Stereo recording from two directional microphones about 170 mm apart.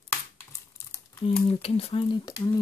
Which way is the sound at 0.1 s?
15° left (ahead or behind).